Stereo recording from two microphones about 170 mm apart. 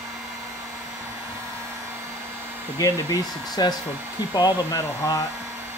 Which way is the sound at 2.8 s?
20° left (ahead or behind).